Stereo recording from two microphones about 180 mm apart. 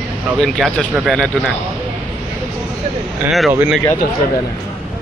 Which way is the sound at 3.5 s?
15° right (ahead or behind).